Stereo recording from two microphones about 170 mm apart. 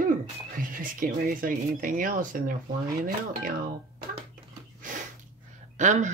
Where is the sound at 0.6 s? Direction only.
55° right (ahead or behind).